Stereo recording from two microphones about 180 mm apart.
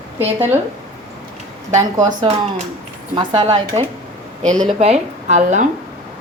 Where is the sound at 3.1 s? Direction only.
25° right (ahead or behind).